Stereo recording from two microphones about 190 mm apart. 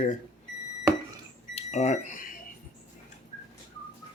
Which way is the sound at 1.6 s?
35° left (ahead or behind).